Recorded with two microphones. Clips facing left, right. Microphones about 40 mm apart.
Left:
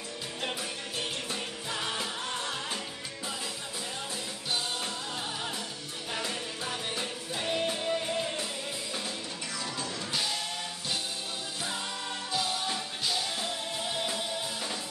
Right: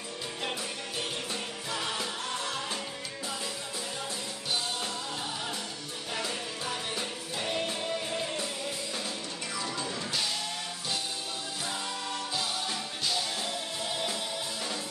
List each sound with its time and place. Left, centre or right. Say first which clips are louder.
0.4 s music: left 1 dB; centre
6.1 s music: even; centre
12.3 s music: left 5 dB; centre